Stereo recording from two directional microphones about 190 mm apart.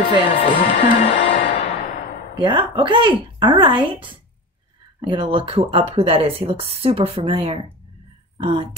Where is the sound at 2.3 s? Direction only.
25° right (ahead or behind).